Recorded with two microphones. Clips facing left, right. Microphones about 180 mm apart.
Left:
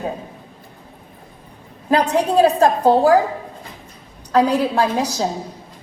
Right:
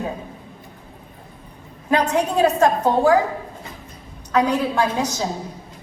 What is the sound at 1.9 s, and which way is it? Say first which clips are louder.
A woman's voice: left 2 dB; 30° left (ahead or behind).